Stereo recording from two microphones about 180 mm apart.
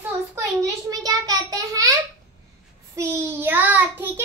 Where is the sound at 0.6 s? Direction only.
20° right (ahead or behind).